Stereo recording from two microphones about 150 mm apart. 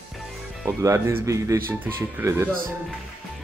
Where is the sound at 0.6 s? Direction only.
20° right (ahead or behind).